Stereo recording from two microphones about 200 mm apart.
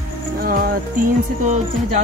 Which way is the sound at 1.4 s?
35° right (ahead or behind).